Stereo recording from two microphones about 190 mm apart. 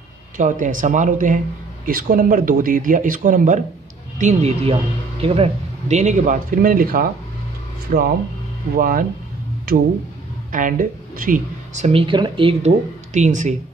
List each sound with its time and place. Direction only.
0.4 s speech: 40° right (ahead or behind)